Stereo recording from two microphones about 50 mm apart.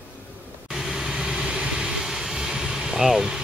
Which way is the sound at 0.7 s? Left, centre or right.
Centre.